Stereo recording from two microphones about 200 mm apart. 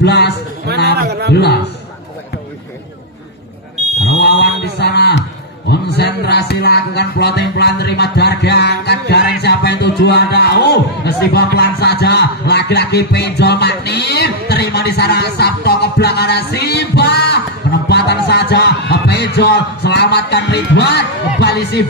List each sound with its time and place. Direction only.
0.0 s speech: 55° left (ahead or behind)
0.9 s speech: 55° right (ahead or behind)
1.3 s music: 55° left (ahead or behind)
4.0 s a sound: 60° left (ahead or behind)
5.7 s music: 55° left (ahead or behind)